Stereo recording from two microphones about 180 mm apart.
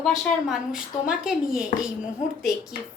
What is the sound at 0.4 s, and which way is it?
A woman's voice, 5° right (ahead or behind).